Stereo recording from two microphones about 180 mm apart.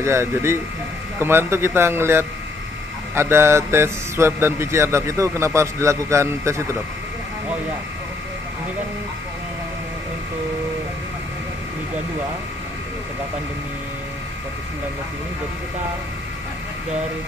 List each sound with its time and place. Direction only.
0.0 s speech: 15° right (ahead or behind)